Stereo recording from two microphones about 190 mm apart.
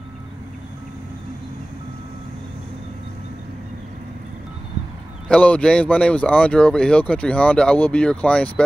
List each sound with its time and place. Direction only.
5.3 s speech: 5° left (ahead or behind)